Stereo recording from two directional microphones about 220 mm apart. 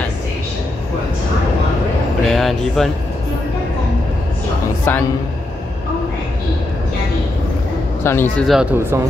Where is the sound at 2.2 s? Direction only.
Centre (ahead or behind).